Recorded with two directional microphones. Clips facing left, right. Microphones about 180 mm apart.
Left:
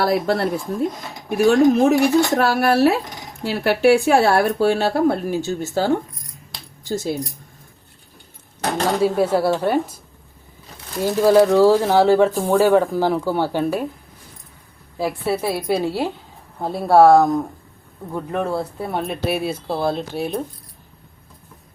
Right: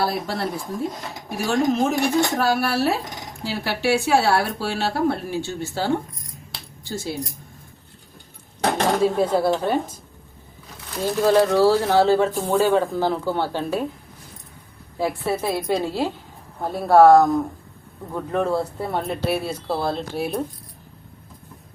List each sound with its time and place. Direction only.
0.0 s speech: 65° left (ahead or behind)
3.4 s speech: 55° left (ahead or behind)
9.0 s speech: 5° left (ahead or behind)
11.0 s speech: 10° left (ahead or behind)
15.0 s speech: 5° left (ahead or behind)
19.0 s speech: 20° left (ahead or behind)
20.1 s speech: 5° right (ahead or behind)